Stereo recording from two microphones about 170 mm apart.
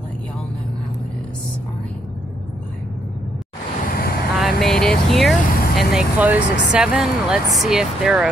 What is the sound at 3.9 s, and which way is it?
Vehicle, 60° left (ahead or behind).